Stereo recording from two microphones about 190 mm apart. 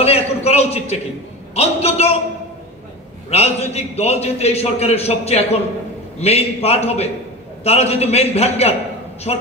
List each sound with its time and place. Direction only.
0.0 s a sound: 30° left (ahead or behind)
1.5 s a man's voice: 35° left (ahead or behind)
3.3 s a man's voice: 35° left (ahead or behind)